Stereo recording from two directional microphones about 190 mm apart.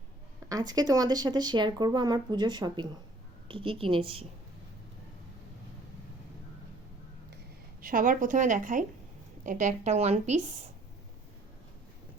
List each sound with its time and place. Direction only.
0.4 s speech: 20° right (ahead or behind)
7.8 s a woman's voice: 50° right (ahead or behind)